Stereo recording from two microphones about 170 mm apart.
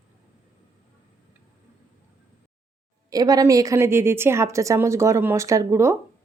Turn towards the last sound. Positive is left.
turn(degrees=-15)  # may be behind; listen again after turning